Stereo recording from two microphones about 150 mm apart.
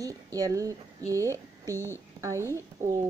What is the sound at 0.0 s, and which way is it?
A woman's voice, 25° right (ahead or behind).